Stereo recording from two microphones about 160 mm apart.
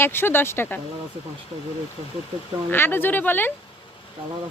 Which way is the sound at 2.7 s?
15° left (ahead or behind).